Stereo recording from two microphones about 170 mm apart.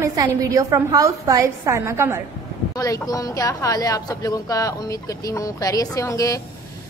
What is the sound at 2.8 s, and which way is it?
A woman's voice, 20° left (ahead or behind).